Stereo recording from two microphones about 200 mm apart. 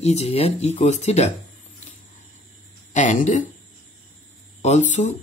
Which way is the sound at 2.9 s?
40° left (ahead or behind).